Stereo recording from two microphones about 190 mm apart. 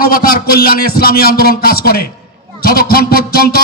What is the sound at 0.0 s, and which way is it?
A man's voice, 50° left (ahead or behind).